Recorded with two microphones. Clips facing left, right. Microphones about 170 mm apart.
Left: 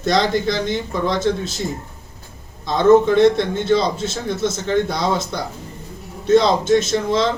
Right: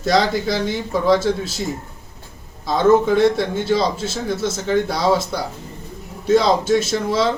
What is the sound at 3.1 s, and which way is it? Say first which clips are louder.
Speech: left 2 dB; 5° right (ahead or behind).